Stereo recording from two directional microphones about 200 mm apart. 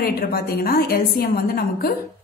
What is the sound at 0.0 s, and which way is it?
A woman's voice, 50° left (ahead or behind).